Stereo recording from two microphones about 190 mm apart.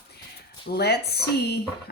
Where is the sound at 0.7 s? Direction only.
60° left (ahead or behind).